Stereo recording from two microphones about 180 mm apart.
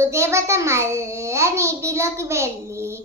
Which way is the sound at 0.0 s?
15° right (ahead or behind).